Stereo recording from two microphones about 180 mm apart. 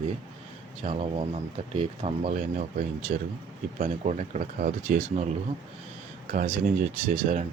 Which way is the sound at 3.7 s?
40° right (ahead or behind).